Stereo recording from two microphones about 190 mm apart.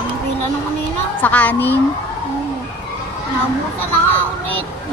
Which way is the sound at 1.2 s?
10° left (ahead or behind).